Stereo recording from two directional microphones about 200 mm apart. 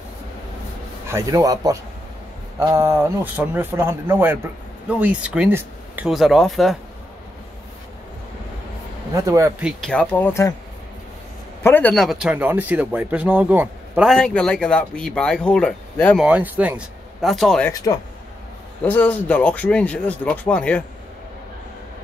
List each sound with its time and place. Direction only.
1.0 s speech: 15° right (ahead or behind)
9.1 s speech: 15° right (ahead or behind)
9.7 s speech: centre (ahead or behind)
11.6 s speech: 10° left (ahead or behind)
16.2 s speech: 5° right (ahead or behind)
17.6 s speech: 20° left (ahead or behind)